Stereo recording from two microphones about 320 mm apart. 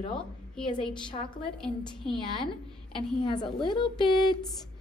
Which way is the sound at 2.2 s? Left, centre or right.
Centre.